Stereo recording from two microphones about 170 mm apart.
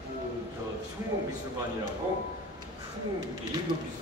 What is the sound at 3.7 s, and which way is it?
Speech, 30° right (ahead or behind).